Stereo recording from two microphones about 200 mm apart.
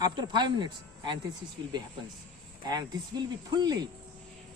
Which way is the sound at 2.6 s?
20° right (ahead or behind).